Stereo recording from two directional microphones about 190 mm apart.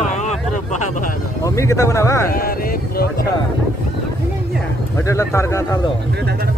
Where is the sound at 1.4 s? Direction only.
15° left (ahead or behind).